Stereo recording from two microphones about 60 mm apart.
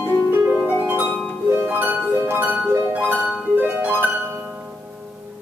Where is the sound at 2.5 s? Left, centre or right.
Right.